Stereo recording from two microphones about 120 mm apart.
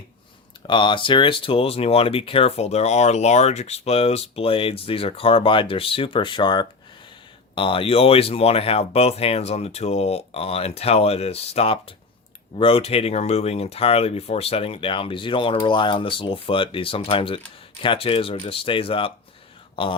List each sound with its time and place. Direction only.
0.7 s speech: 40° left (ahead or behind)